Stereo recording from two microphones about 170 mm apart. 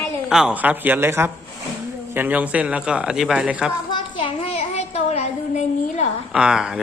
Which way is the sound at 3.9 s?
30° left (ahead or behind).